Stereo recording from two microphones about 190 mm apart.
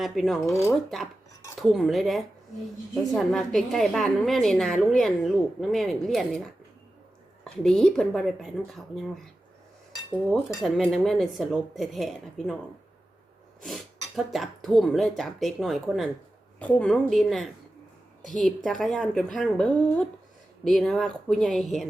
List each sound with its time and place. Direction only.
0.0 s a woman's voice: centre (ahead or behind)
10.3 s a woman's voice: centre (ahead or behind)
13.6 s a woman's voice: centre (ahead or behind)